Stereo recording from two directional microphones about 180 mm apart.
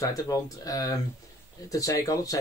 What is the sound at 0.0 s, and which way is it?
Speech, 20° left (ahead or behind).